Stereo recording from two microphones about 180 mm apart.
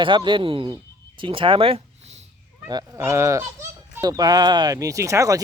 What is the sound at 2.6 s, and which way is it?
Speech, 20° right (ahead or behind).